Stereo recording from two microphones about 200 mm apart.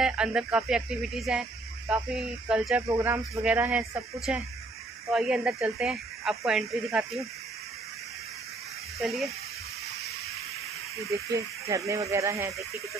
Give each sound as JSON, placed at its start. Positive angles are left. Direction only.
{"t": 0.0, "sound": "speech", "side_deg": -5}
{"t": 11.0, "sound": "speech", "side_deg": -15}